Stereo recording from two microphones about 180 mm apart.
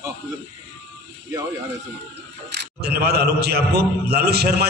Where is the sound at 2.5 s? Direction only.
60° right (ahead or behind).